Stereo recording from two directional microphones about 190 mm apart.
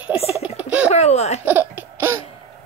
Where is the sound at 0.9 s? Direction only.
35° left (ahead or behind).